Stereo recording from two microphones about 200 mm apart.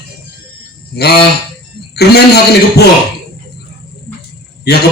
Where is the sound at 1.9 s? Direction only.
55° left (ahead or behind).